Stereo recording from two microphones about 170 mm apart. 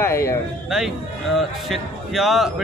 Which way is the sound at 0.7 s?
Centre (ahead or behind).